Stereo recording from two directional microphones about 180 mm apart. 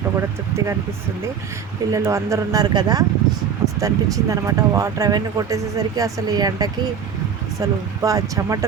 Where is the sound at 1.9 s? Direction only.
15° right (ahead or behind).